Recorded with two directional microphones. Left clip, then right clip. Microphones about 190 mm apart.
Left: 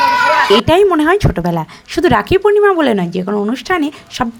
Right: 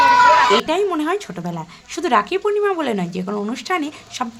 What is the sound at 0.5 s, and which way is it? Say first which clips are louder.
A woman's voice: left 8 dB; 35° left (ahead or behind).